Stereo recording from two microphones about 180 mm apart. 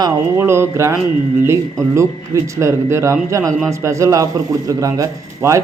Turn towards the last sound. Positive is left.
turn(degrees=-15)  # may be behind; listen again after turning